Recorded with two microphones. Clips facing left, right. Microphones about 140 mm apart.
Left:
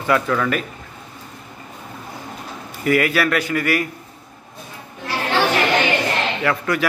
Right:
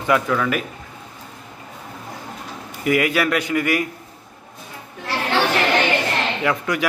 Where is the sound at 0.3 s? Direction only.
5° right (ahead or behind).